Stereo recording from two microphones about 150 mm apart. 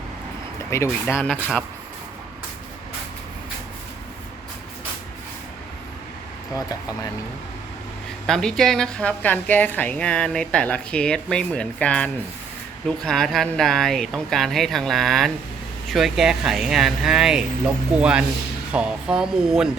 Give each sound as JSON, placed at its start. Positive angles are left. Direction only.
{"t": 0.7, "sound": "a woman's voice", "side_deg": 15}
{"t": 6.5, "sound": "speech", "side_deg": 25}
{"t": 8.3, "sound": "a woman's voice", "side_deg": 5}